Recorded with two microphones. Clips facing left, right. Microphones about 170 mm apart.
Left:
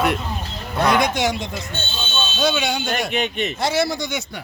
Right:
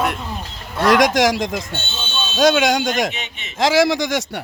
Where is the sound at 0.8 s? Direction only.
90° right.